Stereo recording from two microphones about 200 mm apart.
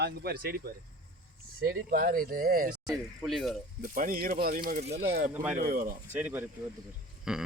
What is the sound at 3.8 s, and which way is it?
Speech, 45° right (ahead or behind).